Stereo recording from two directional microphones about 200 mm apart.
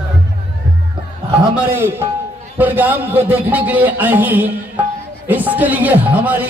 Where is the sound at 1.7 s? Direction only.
10° right (ahead or behind).